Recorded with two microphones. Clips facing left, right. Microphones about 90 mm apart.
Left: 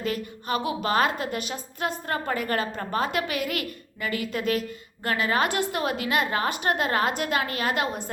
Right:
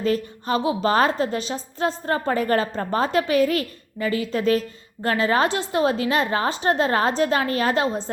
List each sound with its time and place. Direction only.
0.0 s a woman's voice: 35° right (ahead or behind)